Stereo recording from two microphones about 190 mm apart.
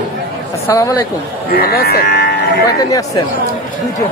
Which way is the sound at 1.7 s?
55° left (ahead or behind).